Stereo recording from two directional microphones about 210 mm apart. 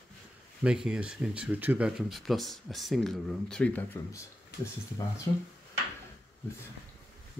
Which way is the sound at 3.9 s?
15° left (ahead or behind).